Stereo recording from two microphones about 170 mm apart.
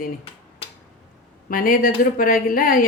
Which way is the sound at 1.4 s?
55° left (ahead or behind).